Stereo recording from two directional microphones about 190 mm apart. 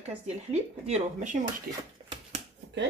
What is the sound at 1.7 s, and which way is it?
Speech, 50° right (ahead or behind).